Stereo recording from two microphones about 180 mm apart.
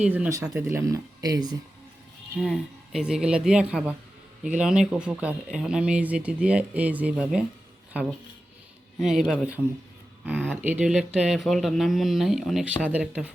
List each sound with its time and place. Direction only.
0.0 s speech: 5° right (ahead or behind)
2.4 s speech: centre (ahead or behind)
9.0 s speech: centre (ahead or behind)